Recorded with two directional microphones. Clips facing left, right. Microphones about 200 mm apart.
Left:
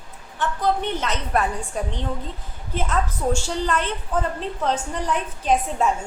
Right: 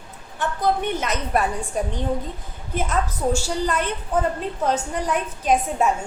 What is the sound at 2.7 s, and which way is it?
A woman's voice, 5° right (ahead or behind).